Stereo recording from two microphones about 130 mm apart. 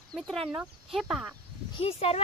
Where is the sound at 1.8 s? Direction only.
50° left (ahead or behind).